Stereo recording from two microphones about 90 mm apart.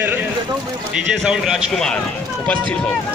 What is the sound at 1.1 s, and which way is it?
Speech, 5° right (ahead or behind).